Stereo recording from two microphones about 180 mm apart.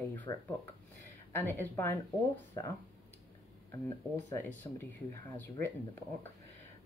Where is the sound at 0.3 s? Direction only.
25° left (ahead or behind).